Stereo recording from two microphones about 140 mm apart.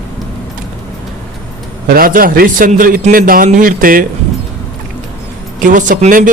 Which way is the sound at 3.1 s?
90° right.